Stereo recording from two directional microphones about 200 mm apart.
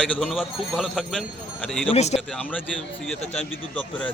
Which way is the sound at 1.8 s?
30° left (ahead or behind).